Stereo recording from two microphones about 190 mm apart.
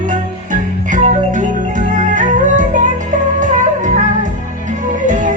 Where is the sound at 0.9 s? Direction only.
40° right (ahead or behind).